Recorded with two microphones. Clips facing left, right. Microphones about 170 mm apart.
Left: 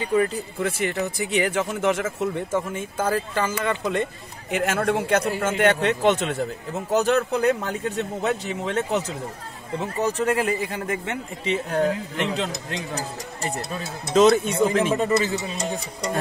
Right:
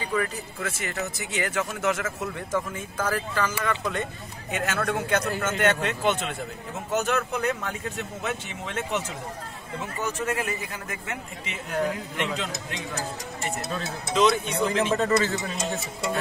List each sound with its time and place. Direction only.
0.1 s a man's voice: 35° left (ahead or behind)
14.1 s speech: 45° left (ahead or behind)
15.0 s speech: 15° left (ahead or behind)